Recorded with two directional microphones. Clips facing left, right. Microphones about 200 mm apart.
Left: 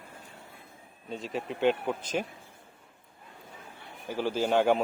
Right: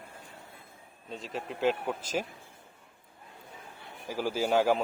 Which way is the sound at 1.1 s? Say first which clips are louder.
Left 3 dB; centre (ahead or behind).